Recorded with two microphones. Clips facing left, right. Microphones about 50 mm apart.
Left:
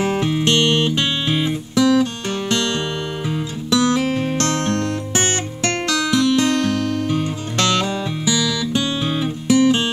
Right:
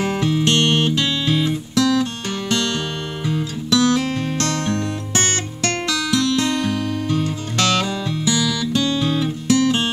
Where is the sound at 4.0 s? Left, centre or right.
Centre.